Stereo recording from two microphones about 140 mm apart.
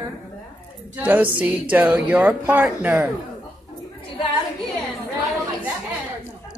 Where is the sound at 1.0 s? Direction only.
10° right (ahead or behind).